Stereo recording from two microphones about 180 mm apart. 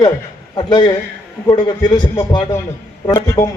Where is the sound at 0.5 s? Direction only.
25° left (ahead or behind).